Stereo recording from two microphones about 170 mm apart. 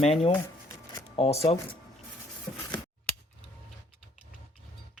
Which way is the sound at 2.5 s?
25° left (ahead or behind).